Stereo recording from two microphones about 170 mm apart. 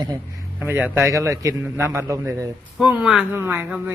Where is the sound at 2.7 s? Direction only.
5° right (ahead or behind).